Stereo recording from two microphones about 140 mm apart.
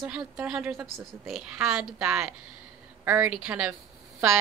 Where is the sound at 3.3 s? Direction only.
10° right (ahead or behind).